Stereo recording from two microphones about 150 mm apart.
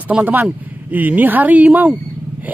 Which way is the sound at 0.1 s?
10° right (ahead or behind).